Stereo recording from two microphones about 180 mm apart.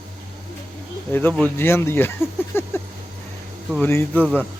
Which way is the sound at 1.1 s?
10° left (ahead or behind).